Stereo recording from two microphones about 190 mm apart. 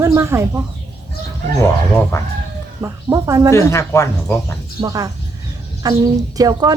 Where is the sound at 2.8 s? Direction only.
15° right (ahead or behind).